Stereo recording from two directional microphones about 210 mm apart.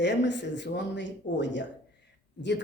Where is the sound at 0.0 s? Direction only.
55° left (ahead or behind).